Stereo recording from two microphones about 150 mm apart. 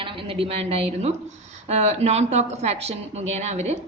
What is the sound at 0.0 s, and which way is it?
A woman's voice, 35° right (ahead or behind).